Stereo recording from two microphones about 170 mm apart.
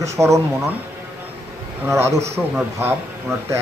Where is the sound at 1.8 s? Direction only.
15° right (ahead or behind).